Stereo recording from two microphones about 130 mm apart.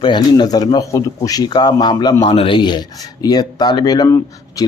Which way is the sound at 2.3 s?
45° left (ahead or behind).